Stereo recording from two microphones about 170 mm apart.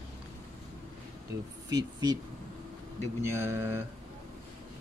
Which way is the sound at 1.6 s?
20° right (ahead or behind).